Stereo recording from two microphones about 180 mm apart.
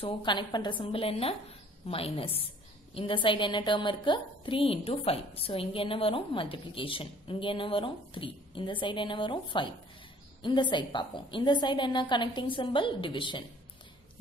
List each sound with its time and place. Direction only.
0.0 s a woman's voice: 25° left (ahead or behind)